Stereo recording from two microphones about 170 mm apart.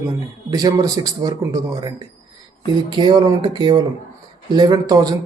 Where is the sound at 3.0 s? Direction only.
25° right (ahead or behind).